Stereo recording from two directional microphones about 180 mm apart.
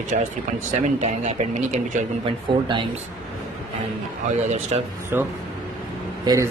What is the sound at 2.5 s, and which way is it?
Speech, 25° right (ahead or behind).